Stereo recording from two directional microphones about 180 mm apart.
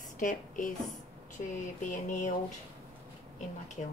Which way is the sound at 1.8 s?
45° left (ahead or behind).